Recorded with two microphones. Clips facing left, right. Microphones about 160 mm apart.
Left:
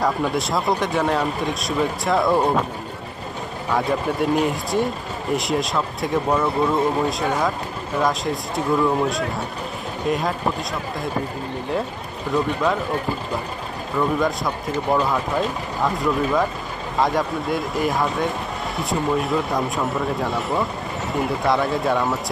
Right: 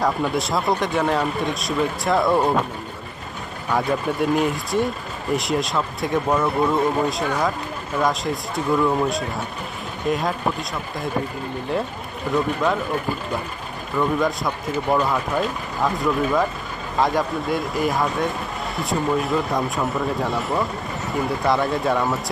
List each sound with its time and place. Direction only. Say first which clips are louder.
0.0 s speech: even; centre (ahead or behind)
3.7 s speech: even; centre (ahead or behind)
12.3 s speech: even; centre (ahead or behind)
13.9 s speech: even; centre (ahead or behind)